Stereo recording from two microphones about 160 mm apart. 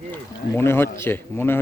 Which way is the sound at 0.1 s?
15° left (ahead or behind).